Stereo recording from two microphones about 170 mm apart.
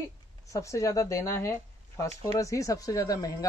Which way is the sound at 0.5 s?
20° left (ahead or behind).